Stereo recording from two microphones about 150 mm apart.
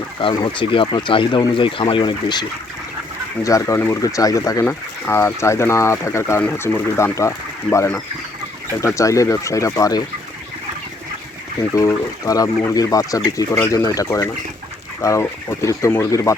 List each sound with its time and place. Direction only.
0.2 s speech: 35° left (ahead or behind)
11.7 s speech: 25° left (ahead or behind)